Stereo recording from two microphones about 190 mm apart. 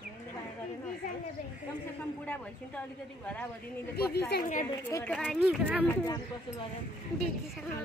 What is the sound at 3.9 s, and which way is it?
Speech, 60° left (ahead or behind).